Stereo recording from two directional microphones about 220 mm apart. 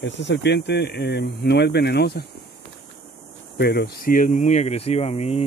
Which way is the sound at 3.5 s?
50° left (ahead or behind).